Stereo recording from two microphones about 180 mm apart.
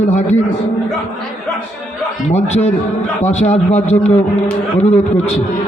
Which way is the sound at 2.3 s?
35° left (ahead or behind).